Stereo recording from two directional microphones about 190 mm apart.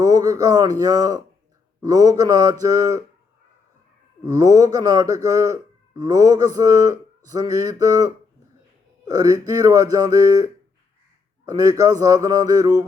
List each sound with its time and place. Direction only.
0.0 s speech: 20° right (ahead or behind)
4.2 s speech: 20° right (ahead or behind)